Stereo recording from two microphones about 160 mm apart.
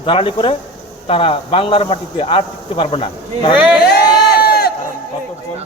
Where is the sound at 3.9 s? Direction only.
80° left.